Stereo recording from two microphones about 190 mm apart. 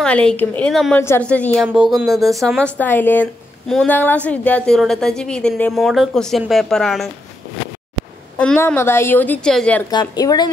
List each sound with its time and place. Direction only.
0.0 s a woman's voice: 5° left (ahead or behind)
1.7 s a woman's voice: 5° right (ahead or behind)
8.4 s a woman's voice: 10° left (ahead or behind)
9.8 s a woman's voice: 20° left (ahead or behind)